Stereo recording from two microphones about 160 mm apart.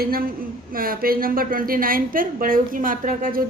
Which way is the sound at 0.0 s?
65° right (ahead or behind).